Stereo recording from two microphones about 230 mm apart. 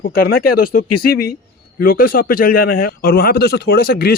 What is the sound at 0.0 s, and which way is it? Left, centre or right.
A man's voice, left.